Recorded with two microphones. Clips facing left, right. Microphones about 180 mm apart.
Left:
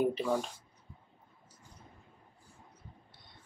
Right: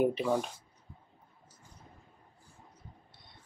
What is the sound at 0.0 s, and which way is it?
Speech, 15° right (ahead or behind).